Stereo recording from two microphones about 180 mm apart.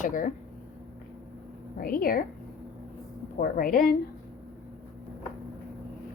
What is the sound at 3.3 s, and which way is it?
Speech, 50° left (ahead or behind).